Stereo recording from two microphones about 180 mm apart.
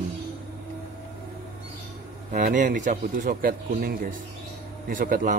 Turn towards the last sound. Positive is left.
turn(degrees=-45)  # may be behind; listen again after turning